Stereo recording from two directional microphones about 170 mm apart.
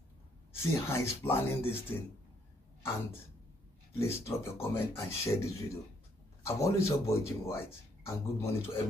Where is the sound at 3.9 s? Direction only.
15° left (ahead or behind).